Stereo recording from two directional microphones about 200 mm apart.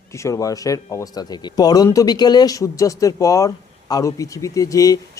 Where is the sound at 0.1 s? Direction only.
15° left (ahead or behind).